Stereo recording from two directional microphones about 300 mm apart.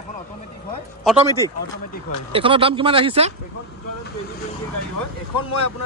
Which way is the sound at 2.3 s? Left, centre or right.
Centre.